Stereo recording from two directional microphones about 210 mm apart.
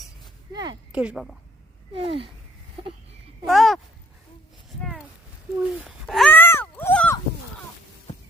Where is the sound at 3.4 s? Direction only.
Centre (ahead or behind).